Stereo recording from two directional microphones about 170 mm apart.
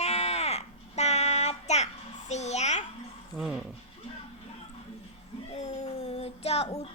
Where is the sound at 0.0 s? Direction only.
40° left (ahead or behind).